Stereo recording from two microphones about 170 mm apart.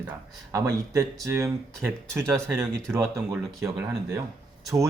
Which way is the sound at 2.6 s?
15° right (ahead or behind).